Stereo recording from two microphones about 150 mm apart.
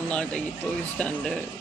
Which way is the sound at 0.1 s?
5° left (ahead or behind).